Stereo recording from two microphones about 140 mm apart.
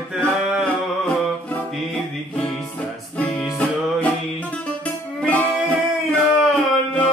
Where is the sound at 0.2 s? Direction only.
5° left (ahead or behind).